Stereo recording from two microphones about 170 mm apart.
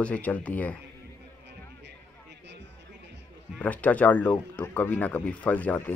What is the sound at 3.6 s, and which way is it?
Speech, 10° left (ahead or behind).